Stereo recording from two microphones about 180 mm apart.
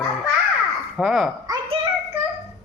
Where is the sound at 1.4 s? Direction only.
25° right (ahead or behind).